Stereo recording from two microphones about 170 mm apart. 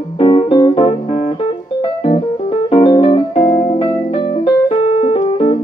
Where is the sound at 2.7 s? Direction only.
30° left (ahead or behind).